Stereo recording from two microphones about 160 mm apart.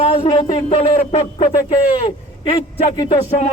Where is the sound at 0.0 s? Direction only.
35° left (ahead or behind).